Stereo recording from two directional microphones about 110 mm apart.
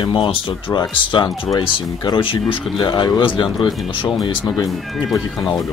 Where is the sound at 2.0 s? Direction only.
50° left (ahead or behind).